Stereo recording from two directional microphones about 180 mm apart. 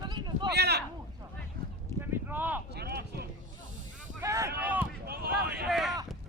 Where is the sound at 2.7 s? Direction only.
60° right (ahead or behind).